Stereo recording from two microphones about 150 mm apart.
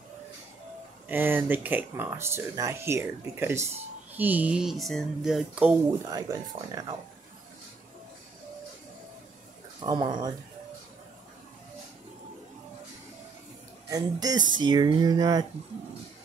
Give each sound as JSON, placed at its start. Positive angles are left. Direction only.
{"t": 1.0, "sound": "speech", "side_deg": -15}
{"t": 6.0, "sound": "speech", "side_deg": -25}
{"t": 9.8, "sound": "speech", "side_deg": -25}
{"t": 13.8, "sound": "speech", "side_deg": -25}